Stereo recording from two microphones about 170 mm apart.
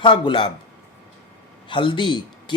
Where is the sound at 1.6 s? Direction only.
30° left (ahead or behind).